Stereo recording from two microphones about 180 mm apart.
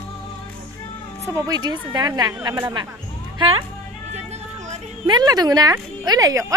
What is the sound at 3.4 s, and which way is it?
Speech, 30° right (ahead or behind).